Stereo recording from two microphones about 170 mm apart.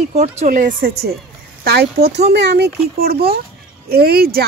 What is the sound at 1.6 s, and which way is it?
Speech, 70° right (ahead or behind).